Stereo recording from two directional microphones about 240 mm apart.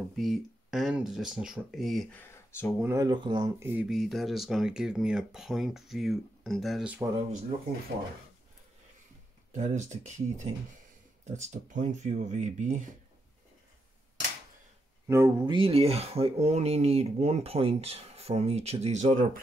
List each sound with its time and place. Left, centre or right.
0.2 s speech: centre
2.8 s speech: centre
9.5 s speech: right
15.0 s speech: centre; by 19.4 s right